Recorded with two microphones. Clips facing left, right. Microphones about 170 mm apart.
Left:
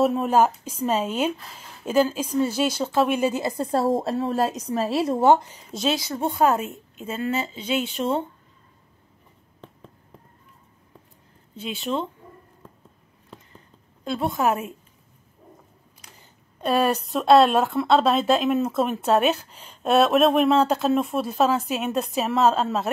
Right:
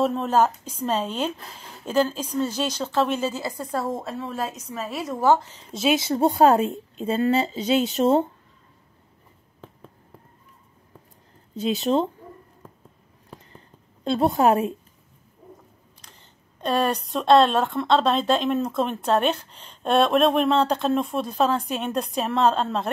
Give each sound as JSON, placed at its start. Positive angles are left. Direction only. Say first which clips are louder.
{"t": 0.0, "sound": "a woman's voice", "louder": "left 1 dB", "side_deg": 10}
{"t": 5.9, "sound": "a woman's voice", "louder": "right 4 dB", "side_deg": -30}
{"t": 11.5, "sound": "a woman's voice", "louder": "right 6 dB", "side_deg": -40}
{"t": 14.0, "sound": "a woman's voice", "louder": "right 4 dB", "side_deg": -30}
{"t": 16.0, "sound": "speech", "louder": "left 3 dB", "side_deg": 10}